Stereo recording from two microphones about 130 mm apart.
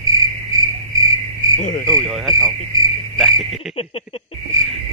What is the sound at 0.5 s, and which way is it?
Frog, 25° right (ahead or behind).